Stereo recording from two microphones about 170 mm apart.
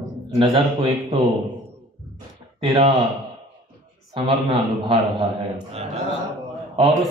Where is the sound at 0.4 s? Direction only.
30° right (ahead or behind).